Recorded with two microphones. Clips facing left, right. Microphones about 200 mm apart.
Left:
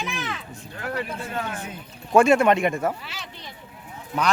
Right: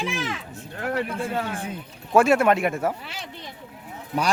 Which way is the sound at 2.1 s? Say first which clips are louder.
Left 1 dB; 5° right (ahead or behind).